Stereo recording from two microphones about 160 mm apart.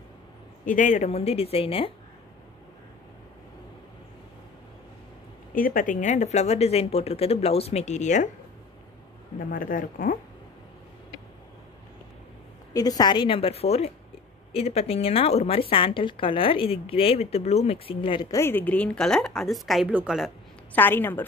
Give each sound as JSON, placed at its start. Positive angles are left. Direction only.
{"t": 0.7, "sound": "speech", "side_deg": 50}
{"t": 5.5, "sound": "speech", "side_deg": 60}
{"t": 9.4, "sound": "speech", "side_deg": 60}
{"t": 12.7, "sound": "speech", "side_deg": 25}
{"t": 18.3, "sound": "a woman's voice", "side_deg": 15}
{"t": 20.7, "sound": "a woman's voice", "side_deg": 10}